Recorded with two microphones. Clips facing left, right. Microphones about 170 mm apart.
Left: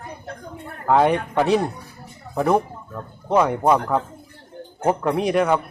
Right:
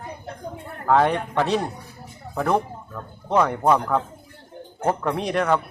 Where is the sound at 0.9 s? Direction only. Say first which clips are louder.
Left 2 dB; 10° left (ahead or behind).